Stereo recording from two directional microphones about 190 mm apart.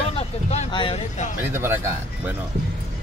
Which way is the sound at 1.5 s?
10° right (ahead or behind).